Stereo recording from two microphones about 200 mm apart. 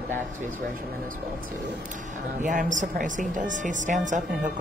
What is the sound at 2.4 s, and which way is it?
A woman's voice, 40° right (ahead or behind).